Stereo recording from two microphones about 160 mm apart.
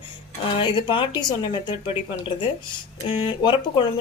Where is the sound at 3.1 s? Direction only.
30° left (ahead or behind).